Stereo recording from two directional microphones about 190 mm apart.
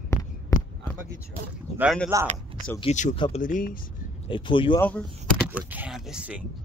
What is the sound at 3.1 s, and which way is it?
Speech, 25° left (ahead or behind).